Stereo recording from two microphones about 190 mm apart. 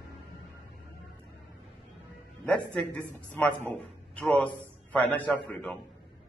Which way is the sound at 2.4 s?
5° left (ahead or behind).